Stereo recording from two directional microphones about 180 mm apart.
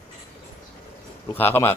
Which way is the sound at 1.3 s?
10° left (ahead or behind).